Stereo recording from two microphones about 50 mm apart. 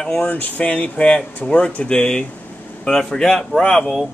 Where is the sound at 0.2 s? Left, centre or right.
Left; by 4.0 s centre.